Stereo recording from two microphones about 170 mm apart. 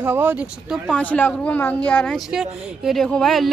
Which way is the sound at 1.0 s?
10° left (ahead or behind).